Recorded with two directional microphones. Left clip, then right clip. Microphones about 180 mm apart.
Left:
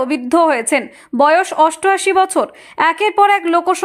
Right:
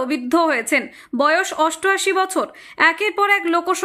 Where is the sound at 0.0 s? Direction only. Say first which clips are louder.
Left 5 dB; 10° left (ahead or behind).